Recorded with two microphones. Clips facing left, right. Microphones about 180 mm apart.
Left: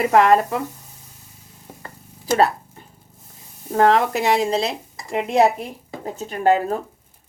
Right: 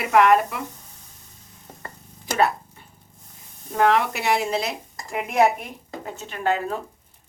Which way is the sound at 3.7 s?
35° left (ahead or behind).